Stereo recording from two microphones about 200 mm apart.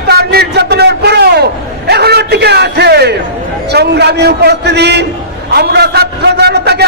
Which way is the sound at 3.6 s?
55° right (ahead or behind).